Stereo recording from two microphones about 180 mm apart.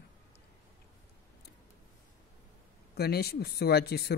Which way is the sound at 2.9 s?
60° left (ahead or behind).